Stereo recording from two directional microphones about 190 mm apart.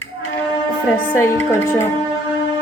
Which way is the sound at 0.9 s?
10° left (ahead or behind).